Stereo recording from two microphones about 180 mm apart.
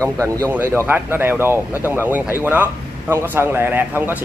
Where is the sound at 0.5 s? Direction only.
10° right (ahead or behind).